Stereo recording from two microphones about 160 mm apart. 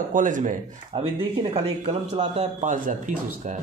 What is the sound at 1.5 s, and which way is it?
A man's voice, 45° right (ahead or behind).